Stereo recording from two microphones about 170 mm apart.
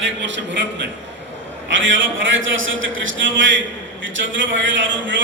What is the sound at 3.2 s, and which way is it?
A man's voice, 90° right.